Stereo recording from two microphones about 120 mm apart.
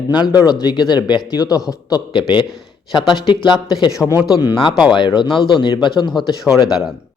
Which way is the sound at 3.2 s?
40° left (ahead or behind).